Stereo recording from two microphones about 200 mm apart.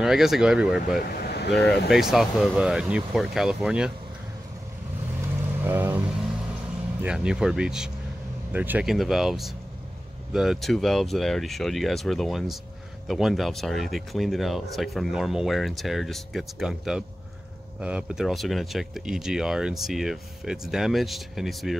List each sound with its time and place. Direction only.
0.0 s speech: centre (ahead or behind)
1.1 s vehicle: 55° left (ahead or behind)
1.9 s speech: centre (ahead or behind)
5.6 s vehicle: 10° right (ahead or behind)
7.0 s speech: 5° right (ahead or behind)